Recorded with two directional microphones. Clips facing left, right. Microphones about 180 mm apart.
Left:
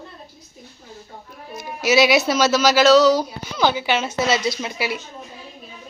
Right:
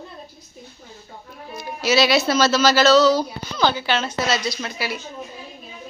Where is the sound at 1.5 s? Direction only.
20° left (ahead or behind).